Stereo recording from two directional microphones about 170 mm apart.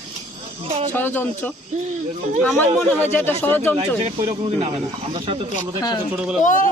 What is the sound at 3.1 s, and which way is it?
Speech, 10° left (ahead or behind).